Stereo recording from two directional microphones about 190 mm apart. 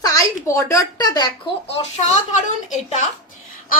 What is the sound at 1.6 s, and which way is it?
Speech, 35° left (ahead or behind).